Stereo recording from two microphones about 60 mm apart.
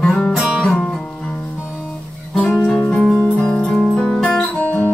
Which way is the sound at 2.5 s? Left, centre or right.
Centre.